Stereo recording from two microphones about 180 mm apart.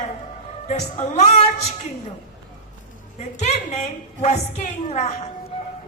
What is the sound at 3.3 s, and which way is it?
A woman's voice, 40° left (ahead or behind).